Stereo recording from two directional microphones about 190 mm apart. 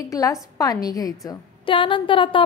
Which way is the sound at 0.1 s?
15° left (ahead or behind).